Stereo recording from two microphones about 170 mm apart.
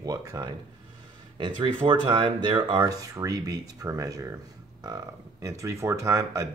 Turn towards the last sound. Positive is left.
turn(degrees=-20)  # may be behind; listen again after turning